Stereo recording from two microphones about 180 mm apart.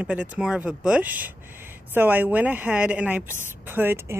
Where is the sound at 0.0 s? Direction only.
5° right (ahead or behind).